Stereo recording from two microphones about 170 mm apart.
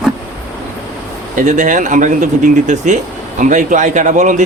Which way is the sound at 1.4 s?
45° right (ahead or behind).